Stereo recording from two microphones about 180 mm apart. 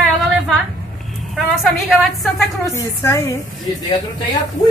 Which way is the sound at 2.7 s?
15° left (ahead or behind).